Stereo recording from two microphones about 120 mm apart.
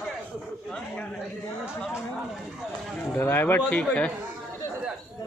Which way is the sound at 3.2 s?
20° left (ahead or behind).